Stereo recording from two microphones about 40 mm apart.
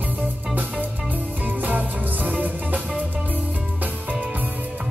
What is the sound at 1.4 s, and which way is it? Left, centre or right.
Music, right.